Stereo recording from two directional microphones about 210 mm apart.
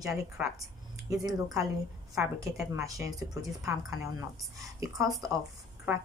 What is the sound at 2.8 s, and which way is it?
Speech, 15° right (ahead or behind).